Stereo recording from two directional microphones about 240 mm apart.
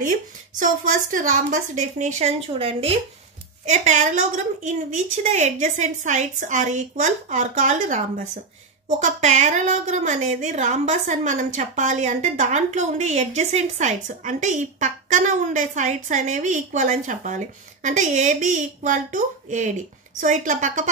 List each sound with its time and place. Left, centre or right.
0.6 s a woman's voice: right